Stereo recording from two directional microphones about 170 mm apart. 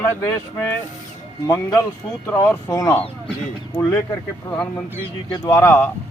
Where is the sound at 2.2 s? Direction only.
15° left (ahead or behind).